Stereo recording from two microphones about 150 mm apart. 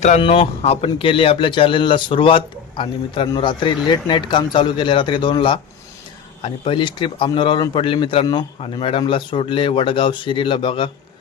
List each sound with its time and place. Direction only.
0.2 s a man's voice: 35° left (ahead or behind)